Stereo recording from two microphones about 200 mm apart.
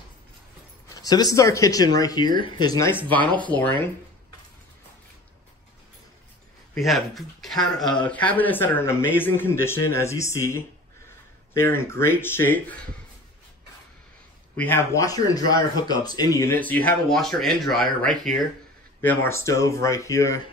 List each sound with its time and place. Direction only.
0.8 s speech: 20° left (ahead or behind)
6.7 s speech: centre (ahead or behind)
14.6 s speech: 10° left (ahead or behind)